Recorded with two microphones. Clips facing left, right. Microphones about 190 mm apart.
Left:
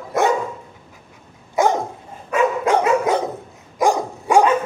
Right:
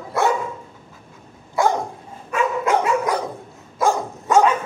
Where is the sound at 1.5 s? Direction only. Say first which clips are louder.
Left 2 dB; 20° left (ahead or behind).